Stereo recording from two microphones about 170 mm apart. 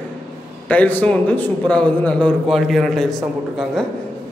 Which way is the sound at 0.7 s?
10° left (ahead or behind).